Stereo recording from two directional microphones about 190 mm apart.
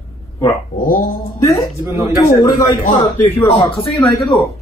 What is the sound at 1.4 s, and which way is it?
A man's voice, 15° left (ahead or behind).